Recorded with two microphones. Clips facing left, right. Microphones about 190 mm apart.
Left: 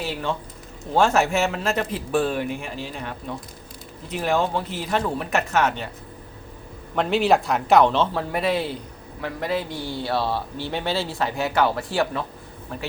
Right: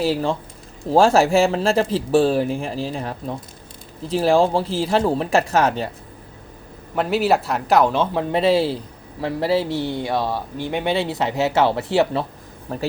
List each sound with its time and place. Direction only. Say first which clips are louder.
0.0 s speech: right 7 dB; 35° right (ahead or behind)
6.9 s speech: right 1 dB; 5° right (ahead or behind); by 11.9 s 25° right (ahead or behind)
12.7 s speech: right 6 dB; 35° right (ahead or behind)